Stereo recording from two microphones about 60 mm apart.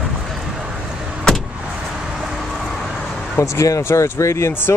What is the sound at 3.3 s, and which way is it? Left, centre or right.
Speech, left.